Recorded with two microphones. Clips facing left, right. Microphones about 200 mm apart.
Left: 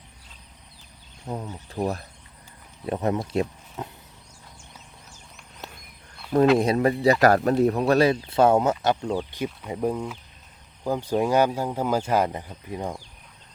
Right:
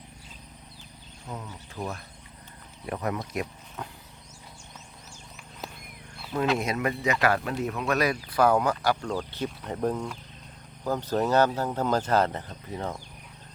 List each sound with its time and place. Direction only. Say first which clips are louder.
1.3 s speech: left 6 dB; 35° left (ahead or behind)
6.6 s speech: left 7 dB; 35° left (ahead or behind); by 13.0 s 15° left (ahead or behind)